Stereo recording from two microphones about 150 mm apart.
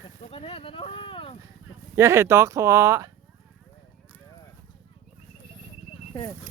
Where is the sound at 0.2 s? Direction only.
40° left (ahead or behind).